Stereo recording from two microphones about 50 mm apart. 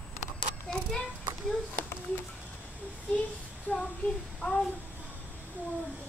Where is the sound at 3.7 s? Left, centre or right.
Left.